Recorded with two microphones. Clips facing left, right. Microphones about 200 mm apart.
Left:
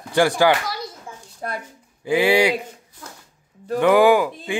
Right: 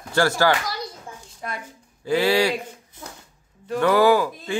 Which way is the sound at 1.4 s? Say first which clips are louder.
Left 4 dB; 45° left (ahead or behind).